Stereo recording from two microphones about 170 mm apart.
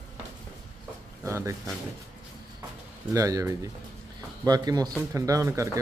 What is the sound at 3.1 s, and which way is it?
Speech, 20° right (ahead or behind).